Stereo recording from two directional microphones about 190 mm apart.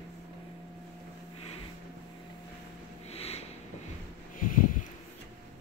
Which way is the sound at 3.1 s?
35° left (ahead or behind).